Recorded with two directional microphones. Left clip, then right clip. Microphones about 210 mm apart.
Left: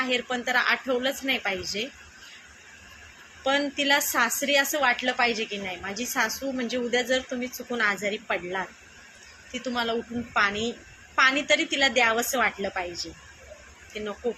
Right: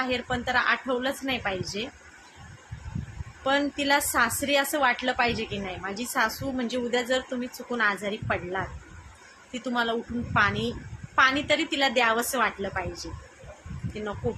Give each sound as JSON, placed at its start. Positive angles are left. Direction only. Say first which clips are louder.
{"t": 0.0, "sound": "a woman's voice", "louder": "left 1 dB", "side_deg": -15}
{"t": 3.4, "sound": "a woman's voice", "louder": "left 1 dB", "side_deg": -15}